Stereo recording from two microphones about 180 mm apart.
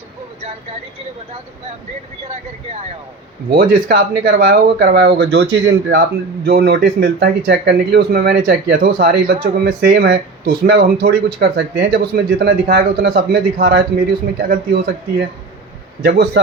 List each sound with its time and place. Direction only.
3.5 s speech: 55° right (ahead or behind)
16.0 s a man's voice: 70° right (ahead or behind)